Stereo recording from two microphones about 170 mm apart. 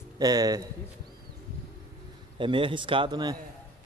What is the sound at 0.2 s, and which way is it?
Speech, 20° right (ahead or behind).